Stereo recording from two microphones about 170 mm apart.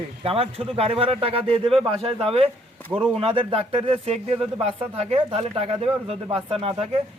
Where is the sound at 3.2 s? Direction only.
30° right (ahead or behind).